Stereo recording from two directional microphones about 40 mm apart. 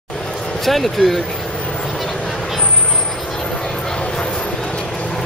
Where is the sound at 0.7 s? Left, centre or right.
Centre.